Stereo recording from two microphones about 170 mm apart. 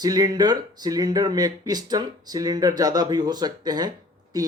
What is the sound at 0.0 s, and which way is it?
A woman's voice, 20° right (ahead or behind).